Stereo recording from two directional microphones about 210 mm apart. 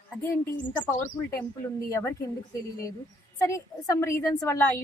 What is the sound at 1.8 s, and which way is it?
Speech, 15° left (ahead or behind).